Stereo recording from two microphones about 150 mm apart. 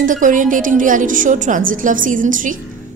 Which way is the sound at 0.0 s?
60° right (ahead or behind).